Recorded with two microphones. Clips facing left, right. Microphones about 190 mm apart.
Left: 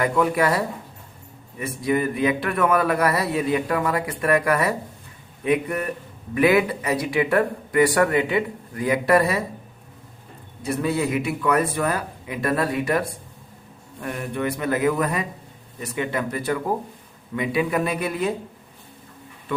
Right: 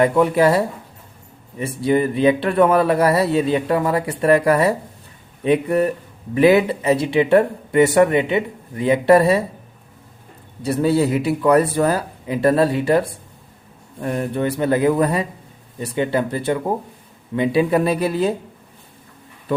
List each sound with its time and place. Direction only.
0.0 s speech: 25° right (ahead or behind)
10.6 s speech: 35° right (ahead or behind)